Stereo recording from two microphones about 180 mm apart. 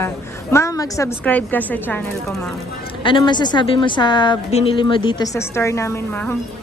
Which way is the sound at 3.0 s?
25° left (ahead or behind).